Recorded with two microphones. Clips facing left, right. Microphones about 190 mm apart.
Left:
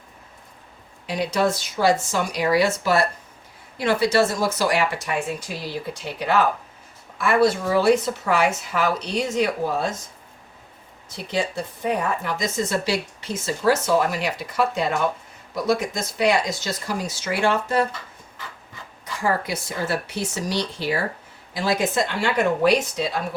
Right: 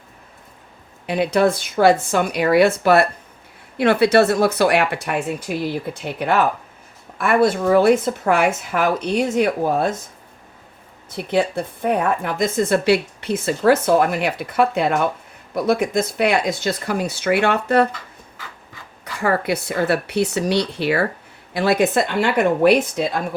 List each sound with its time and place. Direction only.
1.0 s a woman's voice: 55° right (ahead or behind)
11.1 s speech: 55° right (ahead or behind)
19.2 s speech: 60° right (ahead or behind)